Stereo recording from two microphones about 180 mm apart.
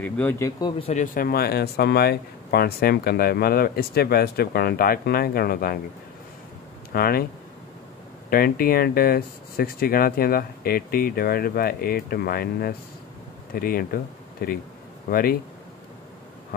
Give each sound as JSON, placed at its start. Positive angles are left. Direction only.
{"t": 0.0, "sound": "speech", "side_deg": 10}
{"t": 0.6, "sound": "speech", "side_deg": 25}
{"t": 1.1, "sound": "speech", "side_deg": 55}
{"t": 6.9, "sound": "speech", "side_deg": 55}
{"t": 8.3, "sound": "speech", "side_deg": 55}